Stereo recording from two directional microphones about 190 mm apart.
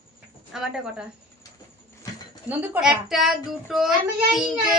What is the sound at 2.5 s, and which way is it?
A child's voice, 5° right (ahead or behind).